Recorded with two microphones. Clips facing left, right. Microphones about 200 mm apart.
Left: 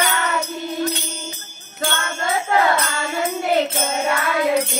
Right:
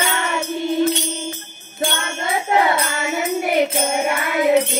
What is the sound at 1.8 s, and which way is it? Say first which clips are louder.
Jingle bell: right 1 dB; 20° right (ahead or behind).